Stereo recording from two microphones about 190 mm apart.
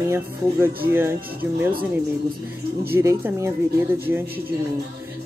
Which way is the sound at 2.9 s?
10° right (ahead or behind).